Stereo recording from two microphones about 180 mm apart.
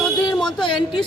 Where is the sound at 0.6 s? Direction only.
25° left (ahead or behind).